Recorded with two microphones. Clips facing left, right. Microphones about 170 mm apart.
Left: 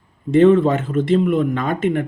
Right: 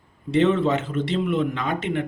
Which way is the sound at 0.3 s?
50° left (ahead or behind).